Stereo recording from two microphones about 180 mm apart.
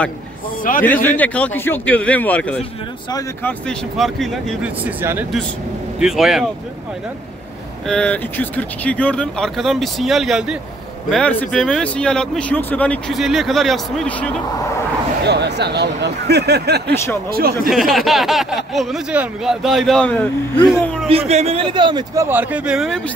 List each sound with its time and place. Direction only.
0.7 s a man's voice: 50° left (ahead or behind)
1.0 s speech: 10° left (ahead or behind)
4.8 s speech: 10° right (ahead or behind)
7.8 s speech: 5° left (ahead or behind)
15.2 s speech: 65° right (ahead or behind)
16.9 s speech: 15° left (ahead or behind)
17.3 s speech: 55° right (ahead or behind)
17.6 s a man's voice: centre (ahead or behind)
21.1 s speech: 35° right (ahead or behind); by 23.1 s centre (ahead or behind)